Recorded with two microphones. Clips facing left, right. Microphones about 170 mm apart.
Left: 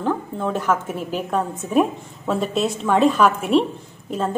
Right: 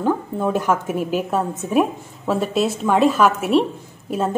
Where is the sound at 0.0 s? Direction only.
10° right (ahead or behind).